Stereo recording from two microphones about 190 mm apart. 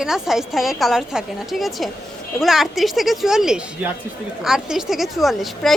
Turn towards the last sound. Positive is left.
turn(degrees=0)  # may be behind; listen again after turning